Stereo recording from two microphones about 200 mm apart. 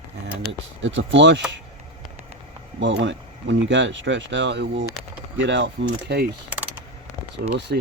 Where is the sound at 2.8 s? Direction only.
65° right (ahead or behind).